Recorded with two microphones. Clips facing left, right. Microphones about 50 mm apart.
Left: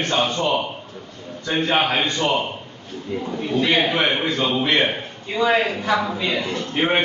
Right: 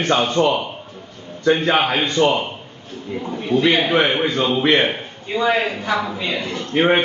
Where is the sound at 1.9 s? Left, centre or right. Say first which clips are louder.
Right 1 dB; centre.